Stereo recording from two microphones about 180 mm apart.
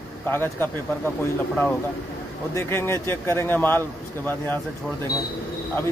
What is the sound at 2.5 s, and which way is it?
Speech, 15° left (ahead or behind).